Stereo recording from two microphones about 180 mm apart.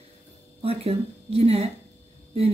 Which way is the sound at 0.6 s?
35° right (ahead or behind).